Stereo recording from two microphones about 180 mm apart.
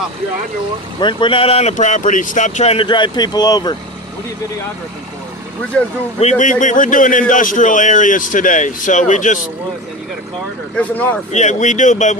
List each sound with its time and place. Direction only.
1.0 s speech: 30° left (ahead or behind)
6.1 s a man's voice: 40° left (ahead or behind)
10.8 s speech: 10° left (ahead or behind)
11.3 s speech: 40° left (ahead or behind)